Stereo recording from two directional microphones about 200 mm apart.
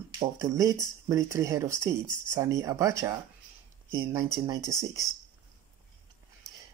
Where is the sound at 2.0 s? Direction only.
40° left (ahead or behind).